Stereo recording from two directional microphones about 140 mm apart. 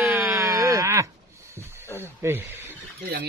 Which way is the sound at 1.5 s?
20° right (ahead or behind).